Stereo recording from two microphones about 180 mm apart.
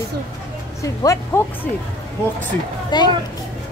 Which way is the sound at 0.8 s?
15° left (ahead or behind).